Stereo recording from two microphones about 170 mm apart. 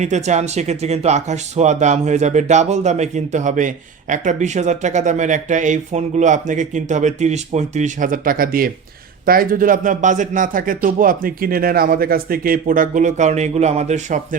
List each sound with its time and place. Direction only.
0.0 s speech: 45° right (ahead or behind)